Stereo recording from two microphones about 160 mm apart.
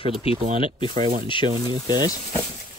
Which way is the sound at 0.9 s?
55° right (ahead or behind).